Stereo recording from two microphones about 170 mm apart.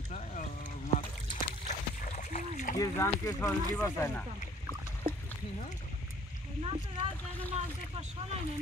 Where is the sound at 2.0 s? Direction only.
50° left (ahead or behind).